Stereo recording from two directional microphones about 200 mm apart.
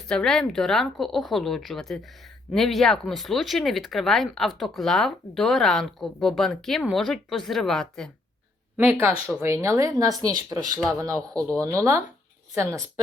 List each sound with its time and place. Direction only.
0.1 s speech: 5° left (ahead or behind)
8.8 s speech: 10° right (ahead or behind)